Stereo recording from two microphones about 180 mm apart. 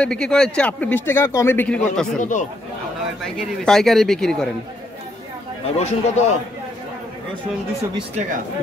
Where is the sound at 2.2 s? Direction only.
45° left (ahead or behind).